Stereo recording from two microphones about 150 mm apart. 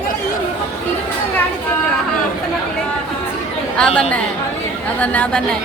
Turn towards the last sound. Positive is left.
turn(degrees=10)  # may be behind; listen again after turning